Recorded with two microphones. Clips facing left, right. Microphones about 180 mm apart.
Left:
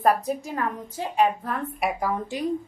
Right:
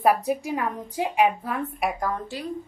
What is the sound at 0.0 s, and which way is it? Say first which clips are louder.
A woman's voice: right 1 dB; 10° right (ahead or behind).